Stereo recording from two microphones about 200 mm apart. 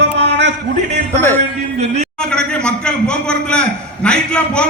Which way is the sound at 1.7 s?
30° right (ahead or behind).